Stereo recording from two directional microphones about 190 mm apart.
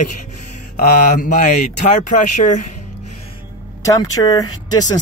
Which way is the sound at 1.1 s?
45° left (ahead or behind).